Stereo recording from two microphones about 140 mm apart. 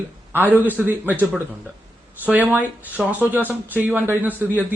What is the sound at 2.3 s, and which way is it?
Speech, 10° right (ahead or behind).